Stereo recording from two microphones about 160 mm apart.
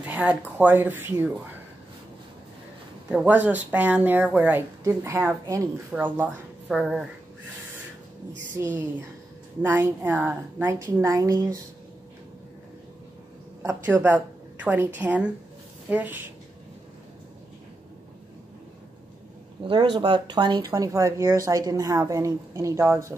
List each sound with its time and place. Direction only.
0.0 s speech: 10° right (ahead or behind)
3.1 s speech: 10° right (ahead or behind)
8.5 s speech: 10° right (ahead or behind)
13.6 s speech: 15° right (ahead or behind)
19.7 s speech: 30° right (ahead or behind)